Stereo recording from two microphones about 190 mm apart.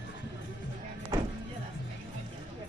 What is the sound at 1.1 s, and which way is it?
Vehicle, 15° right (ahead or behind).